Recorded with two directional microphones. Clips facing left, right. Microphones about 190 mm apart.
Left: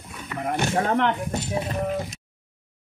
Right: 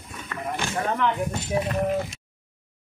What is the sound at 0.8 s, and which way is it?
Speech, 75° left (ahead or behind).